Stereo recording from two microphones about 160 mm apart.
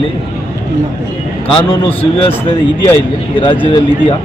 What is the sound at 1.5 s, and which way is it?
Speech, 35° left (ahead or behind).